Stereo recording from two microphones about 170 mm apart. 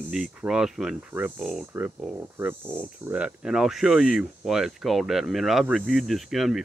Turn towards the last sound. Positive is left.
turn(degrees=0)  # may be behind; listen again after turning